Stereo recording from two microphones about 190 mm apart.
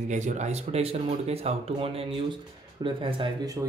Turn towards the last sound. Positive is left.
turn(degrees=-20)  # may be behind; listen again after turning